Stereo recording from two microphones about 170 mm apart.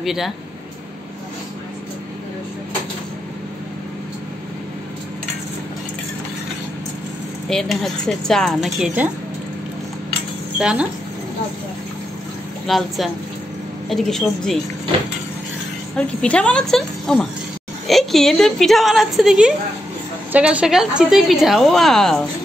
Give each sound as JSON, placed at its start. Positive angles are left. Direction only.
{"t": 0.0, "sound": "speech", "side_deg": 0}
{"t": 7.4, "sound": "a woman's voice", "side_deg": 0}
{"t": 10.6, "sound": "a woman's voice", "side_deg": -5}
{"t": 12.6, "sound": "a woman's voice", "side_deg": 0}
{"t": 16.0, "sound": "a woman's voice", "side_deg": 5}